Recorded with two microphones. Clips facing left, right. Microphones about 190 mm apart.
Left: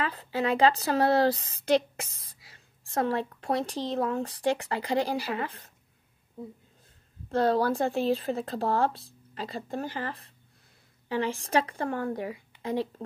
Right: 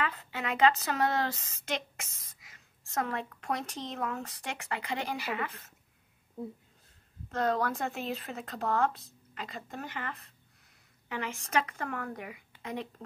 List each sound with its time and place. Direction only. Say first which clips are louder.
0.0 s speech: left 6 dB; 35° left (ahead or behind)
7.2 s speech: left 6 dB; 30° left (ahead or behind)